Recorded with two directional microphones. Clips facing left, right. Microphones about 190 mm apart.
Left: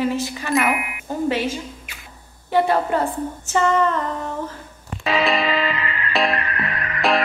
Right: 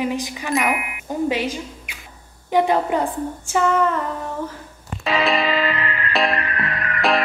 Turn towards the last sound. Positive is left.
turn(degrees=0)  # may be behind; listen again after turning